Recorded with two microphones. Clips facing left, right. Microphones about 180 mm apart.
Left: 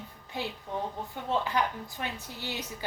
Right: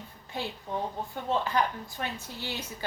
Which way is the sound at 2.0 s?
15° left (ahead or behind).